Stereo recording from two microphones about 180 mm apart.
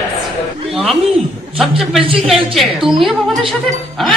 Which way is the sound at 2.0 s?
30° right (ahead or behind).